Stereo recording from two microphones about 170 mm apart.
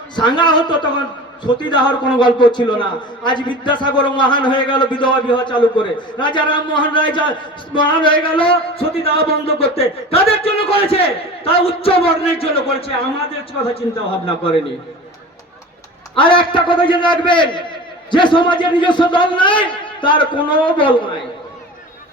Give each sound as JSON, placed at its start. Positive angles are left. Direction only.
{"t": 0.2, "sound": "a man's voice", "side_deg": 25}
{"t": 16.1, "sound": "a man's voice", "side_deg": 30}